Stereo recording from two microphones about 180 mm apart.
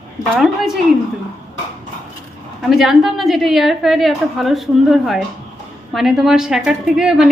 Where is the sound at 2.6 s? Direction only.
Centre (ahead or behind).